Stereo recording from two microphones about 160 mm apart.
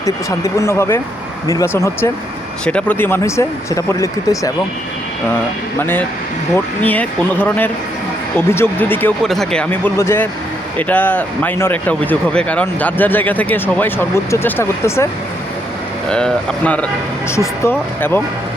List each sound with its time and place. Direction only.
0.0 s speech: 20° left (ahead or behind)
5.8 s speech: 15° left (ahead or behind)
9.2 s speech: centre (ahead or behind)
16.0 s speech: 5° left (ahead or behind)